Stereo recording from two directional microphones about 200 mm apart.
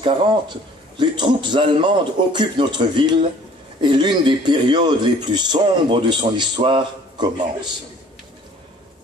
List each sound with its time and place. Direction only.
0.0 s a man's voice: 25° right (ahead or behind)